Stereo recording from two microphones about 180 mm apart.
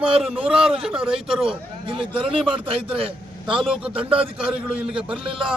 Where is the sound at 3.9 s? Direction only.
30° right (ahead or behind).